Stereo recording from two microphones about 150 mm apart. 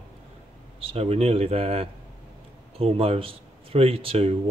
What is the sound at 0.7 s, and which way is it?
Speech, 40° right (ahead or behind).